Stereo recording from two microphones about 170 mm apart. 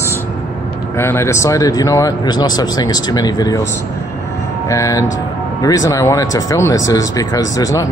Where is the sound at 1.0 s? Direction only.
15° left (ahead or behind).